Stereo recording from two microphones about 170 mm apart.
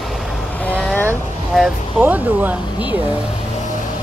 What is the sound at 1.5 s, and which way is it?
Speech, 5° right (ahead or behind).